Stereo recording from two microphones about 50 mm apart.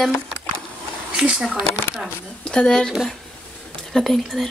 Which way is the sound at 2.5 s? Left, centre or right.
Centre.